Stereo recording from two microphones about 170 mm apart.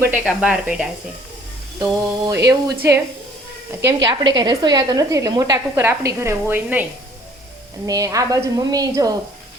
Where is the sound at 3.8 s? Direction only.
25° right (ahead or behind).